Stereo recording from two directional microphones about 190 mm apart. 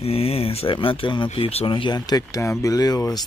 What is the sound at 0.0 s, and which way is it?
Speech, 30° left (ahead or behind).